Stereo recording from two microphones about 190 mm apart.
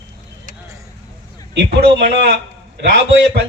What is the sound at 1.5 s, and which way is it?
Speech, 65° right (ahead or behind).